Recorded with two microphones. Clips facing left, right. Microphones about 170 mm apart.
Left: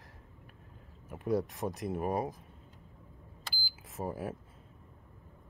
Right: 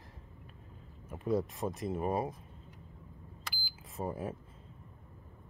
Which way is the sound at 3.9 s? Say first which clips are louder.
Even; centre (ahead or behind).